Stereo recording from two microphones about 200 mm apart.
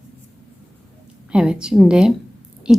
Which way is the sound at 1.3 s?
5° right (ahead or behind).